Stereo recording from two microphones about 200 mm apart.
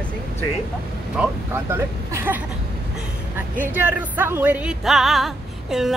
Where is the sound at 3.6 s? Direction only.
10° right (ahead or behind).